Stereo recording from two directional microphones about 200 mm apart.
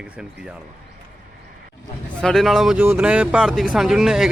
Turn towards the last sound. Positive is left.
turn(degrees=0)  # may be behind; listen again after turning